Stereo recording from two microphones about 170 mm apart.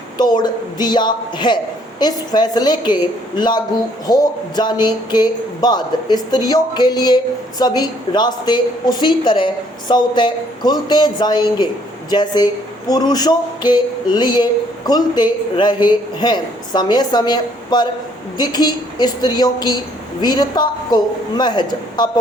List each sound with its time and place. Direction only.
0.2 s speech: 25° left (ahead or behind)